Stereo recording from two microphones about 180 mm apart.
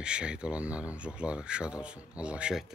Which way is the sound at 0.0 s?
5° right (ahead or behind).